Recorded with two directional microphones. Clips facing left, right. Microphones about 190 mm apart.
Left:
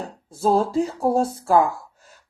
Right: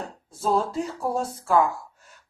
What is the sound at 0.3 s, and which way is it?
Speech, 35° left (ahead or behind).